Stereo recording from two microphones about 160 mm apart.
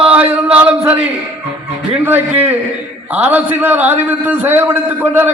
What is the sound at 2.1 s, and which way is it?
A man's voice, 10° right (ahead or behind).